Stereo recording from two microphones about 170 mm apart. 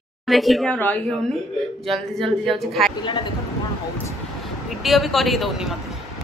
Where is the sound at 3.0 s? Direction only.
30° left (ahead or behind).